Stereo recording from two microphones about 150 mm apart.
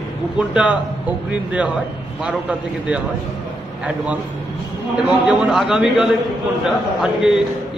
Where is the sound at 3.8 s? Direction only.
10° right (ahead or behind).